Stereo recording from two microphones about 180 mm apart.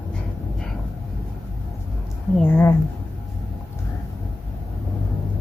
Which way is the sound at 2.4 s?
10° left (ahead or behind).